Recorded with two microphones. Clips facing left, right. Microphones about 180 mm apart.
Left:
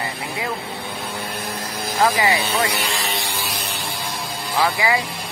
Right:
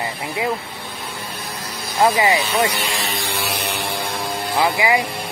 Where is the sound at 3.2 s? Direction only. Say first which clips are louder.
Right 4 dB; 65° right (ahead or behind).